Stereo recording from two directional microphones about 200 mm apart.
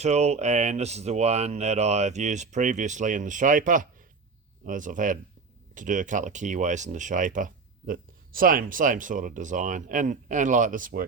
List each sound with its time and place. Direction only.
0.0 s speech: 35° right (ahead or behind)